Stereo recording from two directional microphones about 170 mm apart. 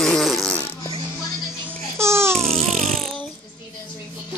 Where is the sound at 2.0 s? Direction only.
15° right (ahead or behind).